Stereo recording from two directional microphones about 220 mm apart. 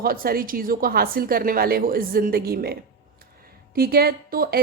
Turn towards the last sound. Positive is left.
turn(degrees=-45)  # may be behind; listen again after turning